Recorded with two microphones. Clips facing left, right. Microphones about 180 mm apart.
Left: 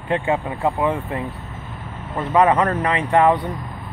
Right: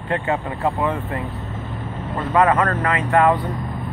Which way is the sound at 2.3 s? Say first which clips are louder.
Left 1 dB; 15° left (ahead or behind).